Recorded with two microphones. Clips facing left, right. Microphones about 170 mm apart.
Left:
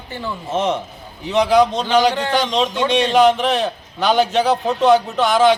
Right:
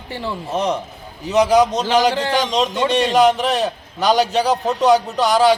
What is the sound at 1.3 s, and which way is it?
Speech, 40° right (ahead or behind).